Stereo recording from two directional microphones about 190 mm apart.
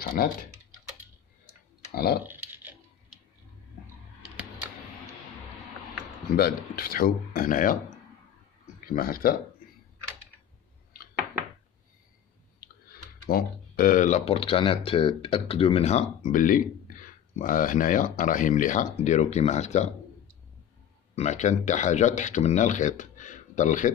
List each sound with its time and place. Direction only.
0.0 s speech: 50° left (ahead or behind)
2.2 s a sound: 10° right (ahead or behind)
6.3 s speech: 50° left (ahead or behind)
8.8 s speech: 50° left (ahead or behind)
13.3 s speech: 50° left (ahead or behind)
21.1 s speech: 35° left (ahead or behind)